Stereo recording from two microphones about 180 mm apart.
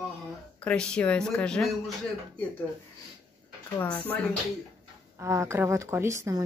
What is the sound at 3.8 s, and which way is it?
Speech, 10° left (ahead or behind).